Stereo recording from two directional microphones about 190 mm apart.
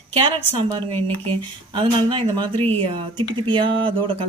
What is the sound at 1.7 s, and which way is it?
Speech, 25° right (ahead or behind).